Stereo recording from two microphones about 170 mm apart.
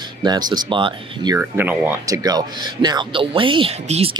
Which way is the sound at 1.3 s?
10° right (ahead or behind).